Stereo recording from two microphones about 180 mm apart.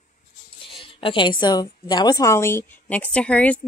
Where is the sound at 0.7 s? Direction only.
30° left (ahead or behind).